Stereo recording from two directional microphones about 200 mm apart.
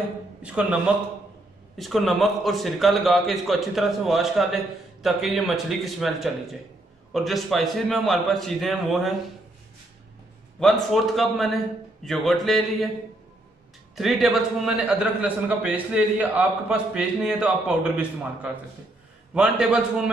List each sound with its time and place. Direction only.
0.4 s a man's voice: 5° right (ahead or behind)
10.6 s a man's voice: centre (ahead or behind)
13.9 s a man's voice: centre (ahead or behind)